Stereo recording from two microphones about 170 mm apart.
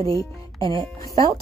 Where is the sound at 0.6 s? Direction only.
30° right (ahead or behind).